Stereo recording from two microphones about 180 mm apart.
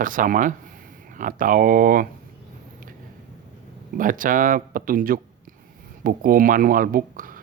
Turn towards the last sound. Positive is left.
turn(degrees=-50)  # may be behind; listen again after turning